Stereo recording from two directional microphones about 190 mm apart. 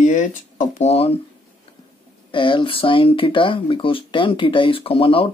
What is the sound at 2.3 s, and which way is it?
Speech, 25° left (ahead or behind).